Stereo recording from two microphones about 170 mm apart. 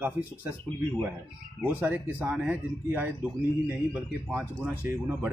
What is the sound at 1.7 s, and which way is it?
Speech, 10° right (ahead or behind).